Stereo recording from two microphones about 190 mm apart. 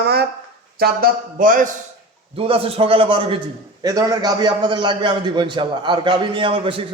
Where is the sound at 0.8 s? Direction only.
50° right (ahead or behind).